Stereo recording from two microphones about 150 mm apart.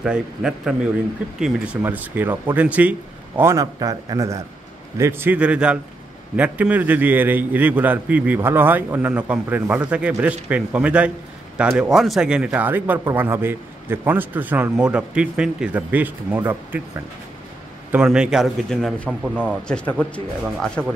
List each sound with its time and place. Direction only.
0.0 s a man's voice: 5° right (ahead or behind)
1.8 s a man's voice: 10° right (ahead or behind)
19.7 s a man's voice: 10° left (ahead or behind)